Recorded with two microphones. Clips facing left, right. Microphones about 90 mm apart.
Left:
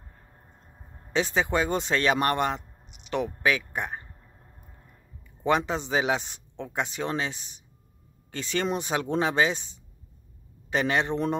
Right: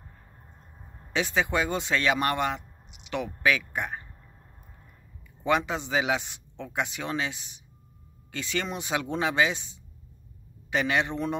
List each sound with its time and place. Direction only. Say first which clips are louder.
1.1 s speech: left 1 dB; 30° left (ahead or behind)
5.4 s speech: left 1 dB; 30° left (ahead or behind)
10.7 s speech: left 1 dB; 35° left (ahead or behind)